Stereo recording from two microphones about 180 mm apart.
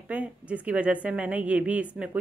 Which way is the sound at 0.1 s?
10° right (ahead or behind).